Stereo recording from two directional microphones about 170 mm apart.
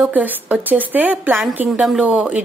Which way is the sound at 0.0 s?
10° right (ahead or behind).